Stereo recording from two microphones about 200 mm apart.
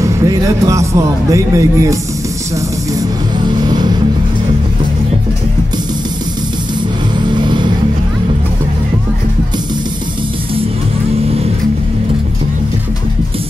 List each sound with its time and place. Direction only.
0.0 s a man's voice: 15° right (ahead or behind)
3.4 s music: 20° right (ahead or behind)
7.2 s vehicle: 20° right (ahead or behind)